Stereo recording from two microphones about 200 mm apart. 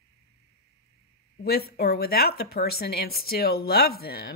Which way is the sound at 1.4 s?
50° left (ahead or behind).